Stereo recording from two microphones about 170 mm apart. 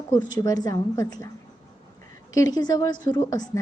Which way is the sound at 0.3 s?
20° left (ahead or behind).